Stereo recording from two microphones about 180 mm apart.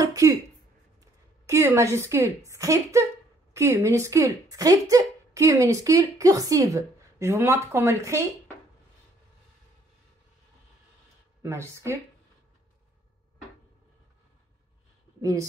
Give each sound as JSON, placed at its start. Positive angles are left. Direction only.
{"t": 0.0, "sound": "a sound", "side_deg": -20}
{"t": 1.4, "sound": "speech", "side_deg": -15}
{"t": 11.4, "sound": "speech", "side_deg": -15}